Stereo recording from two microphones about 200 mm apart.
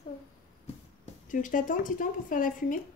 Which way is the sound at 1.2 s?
40° left (ahead or behind).